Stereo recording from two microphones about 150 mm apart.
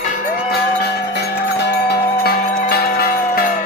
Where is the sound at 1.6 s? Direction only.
90° left.